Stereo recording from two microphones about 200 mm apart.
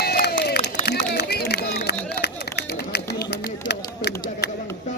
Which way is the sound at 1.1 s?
55° left (ahead or behind).